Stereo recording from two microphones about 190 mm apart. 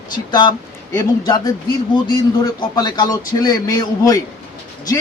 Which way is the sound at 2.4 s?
20° left (ahead or behind).